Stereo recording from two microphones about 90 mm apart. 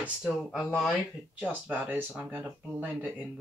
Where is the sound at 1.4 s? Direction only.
20° right (ahead or behind).